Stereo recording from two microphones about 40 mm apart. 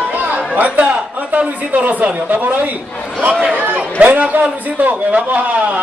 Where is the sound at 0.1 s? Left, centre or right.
Right.